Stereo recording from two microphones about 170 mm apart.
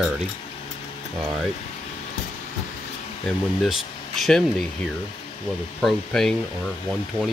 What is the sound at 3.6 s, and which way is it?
Speech, centre (ahead or behind).